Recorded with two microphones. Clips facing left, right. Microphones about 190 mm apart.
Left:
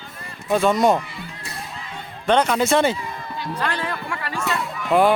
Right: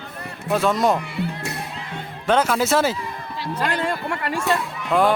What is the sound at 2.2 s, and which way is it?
Speech, 5° right (ahead or behind).